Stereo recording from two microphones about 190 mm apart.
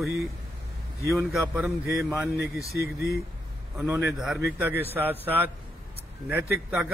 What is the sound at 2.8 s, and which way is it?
Speech, 55° left (ahead or behind).